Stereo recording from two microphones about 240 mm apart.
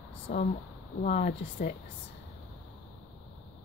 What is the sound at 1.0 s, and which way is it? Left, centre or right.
Speech, left.